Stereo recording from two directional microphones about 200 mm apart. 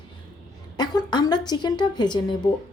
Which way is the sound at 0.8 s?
20° left (ahead or behind).